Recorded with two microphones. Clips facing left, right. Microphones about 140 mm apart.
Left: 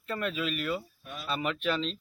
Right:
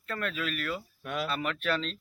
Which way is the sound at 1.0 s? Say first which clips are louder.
Right 10 dB; 90° right.